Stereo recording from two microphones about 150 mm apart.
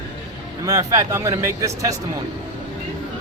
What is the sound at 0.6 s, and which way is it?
A man's voice, 25° right (ahead or behind).